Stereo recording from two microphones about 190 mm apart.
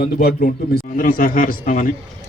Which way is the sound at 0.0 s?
50° left (ahead or behind).